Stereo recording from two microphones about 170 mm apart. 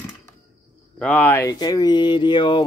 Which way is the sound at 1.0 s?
10° left (ahead or behind).